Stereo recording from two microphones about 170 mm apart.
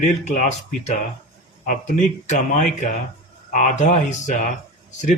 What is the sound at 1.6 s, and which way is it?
Speech, 45° left (ahead or behind).